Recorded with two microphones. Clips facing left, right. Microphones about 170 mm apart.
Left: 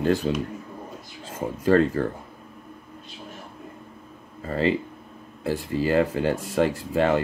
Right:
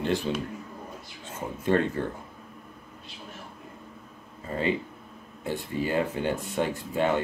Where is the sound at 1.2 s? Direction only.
90° left.